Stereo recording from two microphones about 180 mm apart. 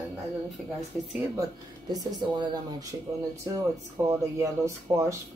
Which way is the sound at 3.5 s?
20° right (ahead or behind).